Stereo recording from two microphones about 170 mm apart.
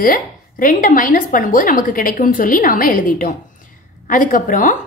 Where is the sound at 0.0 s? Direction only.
55° left (ahead or behind).